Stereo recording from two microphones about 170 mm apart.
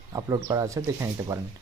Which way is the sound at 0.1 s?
20° right (ahead or behind).